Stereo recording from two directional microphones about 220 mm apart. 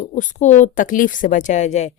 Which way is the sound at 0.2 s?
35° left (ahead or behind).